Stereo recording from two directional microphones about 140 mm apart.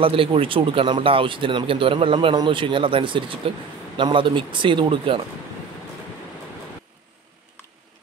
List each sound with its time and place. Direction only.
0.0 s speech: 40° right (ahead or behind)